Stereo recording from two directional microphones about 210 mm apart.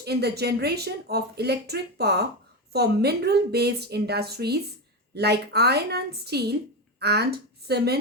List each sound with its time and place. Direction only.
0.0 s speech: 50° right (ahead or behind)